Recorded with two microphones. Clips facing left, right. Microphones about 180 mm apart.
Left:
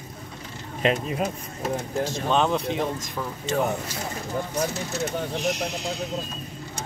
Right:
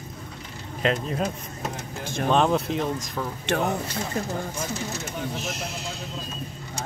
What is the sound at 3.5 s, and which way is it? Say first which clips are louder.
Speech: left 1 dB; 65° right (ahead or behind).